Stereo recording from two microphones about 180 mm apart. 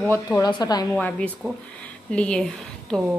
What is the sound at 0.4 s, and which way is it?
Speech, 20° left (ahead or behind).